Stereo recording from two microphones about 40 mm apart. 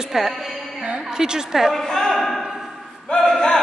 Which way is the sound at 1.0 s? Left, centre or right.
Centre.